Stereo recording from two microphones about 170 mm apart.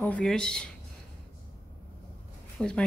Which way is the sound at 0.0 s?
5° left (ahead or behind).